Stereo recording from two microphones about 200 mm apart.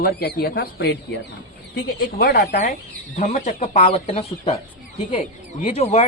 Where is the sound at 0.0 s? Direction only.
50° left (ahead or behind).